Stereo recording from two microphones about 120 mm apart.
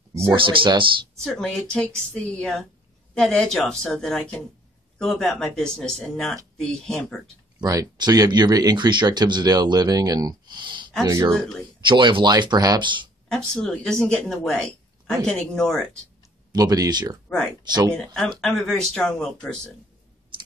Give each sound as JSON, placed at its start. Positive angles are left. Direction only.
{"t": 0.3, "sound": "speech", "side_deg": -40}
{"t": 1.2, "sound": "a woman's voice", "side_deg": 5}
{"t": 7.6, "sound": "speech", "side_deg": -30}
{"t": 11.1, "sound": "speech", "side_deg": -25}
{"t": 11.8, "sound": "speech", "side_deg": -40}
{"t": 13.3, "sound": "speech", "side_deg": 5}
{"t": 16.5, "sound": "speech", "side_deg": -30}
{"t": 17.9, "sound": "a woman's voice", "side_deg": 5}